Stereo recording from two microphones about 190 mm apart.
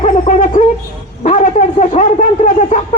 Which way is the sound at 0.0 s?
40° left (ahead or behind).